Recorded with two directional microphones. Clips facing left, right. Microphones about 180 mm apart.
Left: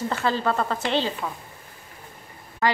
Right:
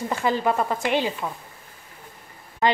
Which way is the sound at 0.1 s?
15° right (ahead or behind).